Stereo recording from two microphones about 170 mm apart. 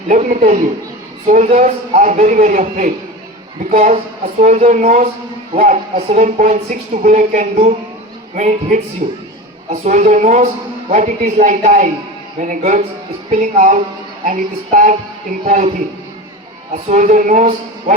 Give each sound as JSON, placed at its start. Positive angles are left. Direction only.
{"t": 0.1, "sound": "a woman's voice", "side_deg": -45}
{"t": 16.7, "sound": "a woman's voice", "side_deg": -45}